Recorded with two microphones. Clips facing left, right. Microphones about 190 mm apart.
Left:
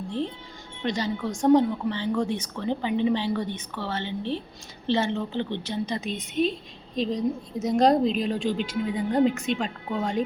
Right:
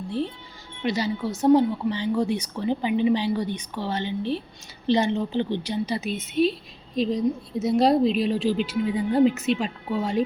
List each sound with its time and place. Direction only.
0.8 s a woman's voice: 10° right (ahead or behind)